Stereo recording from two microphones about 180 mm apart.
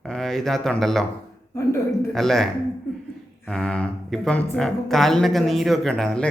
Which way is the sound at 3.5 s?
5° left (ahead or behind).